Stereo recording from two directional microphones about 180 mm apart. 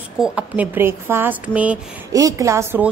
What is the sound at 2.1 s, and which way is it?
Speech, 20° right (ahead or behind).